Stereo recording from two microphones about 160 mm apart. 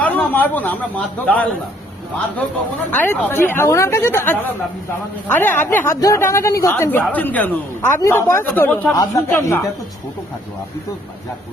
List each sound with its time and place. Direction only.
0.0 s speech: 10° left (ahead or behind)
2.9 s speech: 10° left (ahead or behind)